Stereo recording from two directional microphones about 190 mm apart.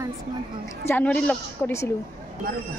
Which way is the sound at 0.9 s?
10° left (ahead or behind).